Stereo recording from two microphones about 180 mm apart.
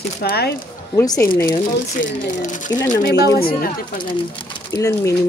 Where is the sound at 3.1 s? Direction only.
70° left (ahead or behind).